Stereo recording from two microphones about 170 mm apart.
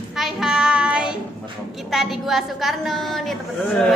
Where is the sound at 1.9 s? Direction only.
Centre (ahead or behind).